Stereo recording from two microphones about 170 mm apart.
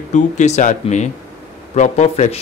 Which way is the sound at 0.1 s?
45° left (ahead or behind).